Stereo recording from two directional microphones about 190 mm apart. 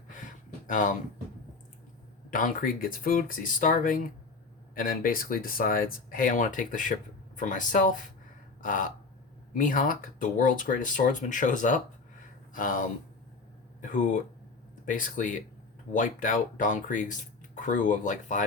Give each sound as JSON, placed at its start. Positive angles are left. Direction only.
{"t": 2.3, "sound": "speech", "side_deg": 45}
{"t": 13.9, "sound": "speech", "side_deg": 45}